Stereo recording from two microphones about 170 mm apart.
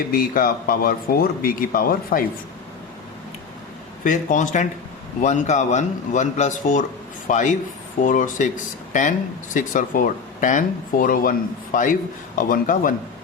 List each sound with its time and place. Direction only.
0.1 s speech: 60° left (ahead or behind)
4.0 s speech: 50° left (ahead or behind)